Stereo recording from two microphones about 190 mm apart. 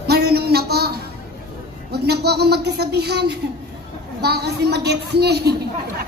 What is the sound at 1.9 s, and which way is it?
A child's voice, 60° right (ahead or behind).